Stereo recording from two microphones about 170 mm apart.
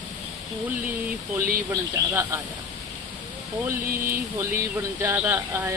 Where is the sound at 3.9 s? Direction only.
55° right (ahead or behind).